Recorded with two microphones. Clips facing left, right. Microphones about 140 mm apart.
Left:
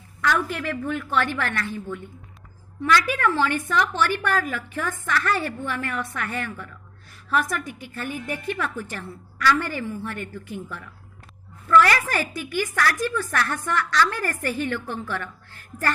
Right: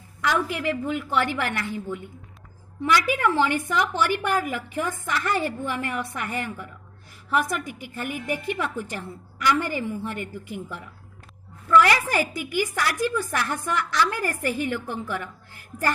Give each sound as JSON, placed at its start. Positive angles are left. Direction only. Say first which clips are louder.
{"t": 0.2, "sound": "a woman's voice", "louder": "even", "side_deg": -15}